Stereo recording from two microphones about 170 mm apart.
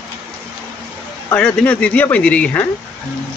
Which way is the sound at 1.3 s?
10° left (ahead or behind).